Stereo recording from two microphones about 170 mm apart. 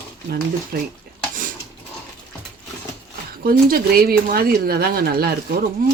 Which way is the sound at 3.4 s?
60° right (ahead or behind).